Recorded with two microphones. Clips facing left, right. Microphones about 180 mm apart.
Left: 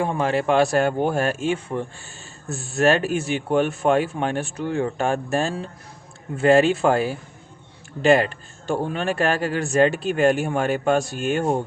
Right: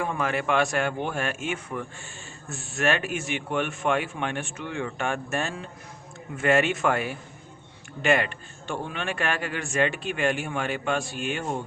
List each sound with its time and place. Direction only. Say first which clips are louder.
0.0 s speech: left 6 dB; 30° left (ahead or behind)